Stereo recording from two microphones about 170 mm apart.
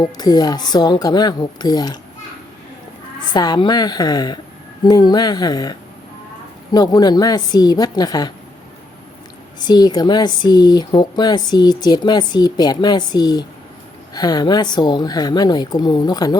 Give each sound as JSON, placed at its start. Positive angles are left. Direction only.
{"t": 0.0, "sound": "speech", "side_deg": 25}
{"t": 3.3, "sound": "speech", "side_deg": 25}
{"t": 6.7, "sound": "speech", "side_deg": 25}
{"t": 9.6, "sound": "speech", "side_deg": 25}